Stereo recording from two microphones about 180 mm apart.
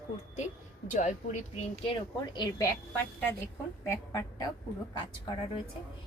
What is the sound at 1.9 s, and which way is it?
A woman's voice, 25° left (ahead or behind).